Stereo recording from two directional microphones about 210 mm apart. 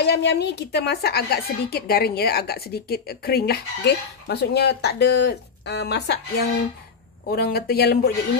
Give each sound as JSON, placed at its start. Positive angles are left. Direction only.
{"t": 0.0, "sound": "a woman's voice", "side_deg": 55}